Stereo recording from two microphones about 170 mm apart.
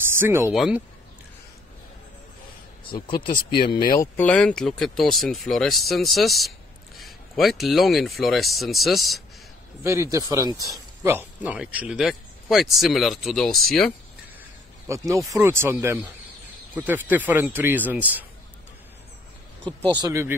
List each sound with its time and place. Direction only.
0.1 s speech: 15° right (ahead or behind)
2.8 s speech: 30° left (ahead or behind)
4.2 s speech: 10° left (ahead or behind)
9.8 s speech: 20° right (ahead or behind); by 13.9 s centre (ahead or behind)
14.9 s speech: 20° right (ahead or behind)
19.6 s speech: 10° left (ahead or behind)
20.0 s speech: 20° right (ahead or behind)